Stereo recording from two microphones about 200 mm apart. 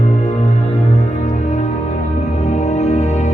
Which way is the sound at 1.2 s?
35° left (ahead or behind).